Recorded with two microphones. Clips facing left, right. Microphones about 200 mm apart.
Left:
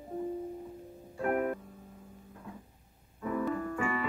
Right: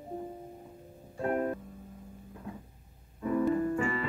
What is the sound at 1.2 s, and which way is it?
Music, 30° right (ahead or behind).